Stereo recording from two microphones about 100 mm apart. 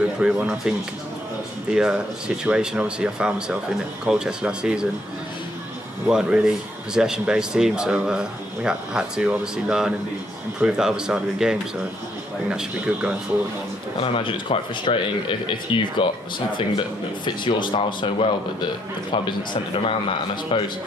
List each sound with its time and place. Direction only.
0.2 s speech: 10° right (ahead or behind)
6.0 s speech: 10° right (ahead or behind)
14.0 s speech: 60° left (ahead or behind)